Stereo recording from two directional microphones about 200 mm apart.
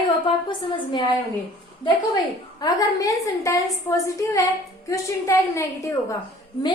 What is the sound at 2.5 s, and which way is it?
A woman's voice, 20° left (ahead or behind).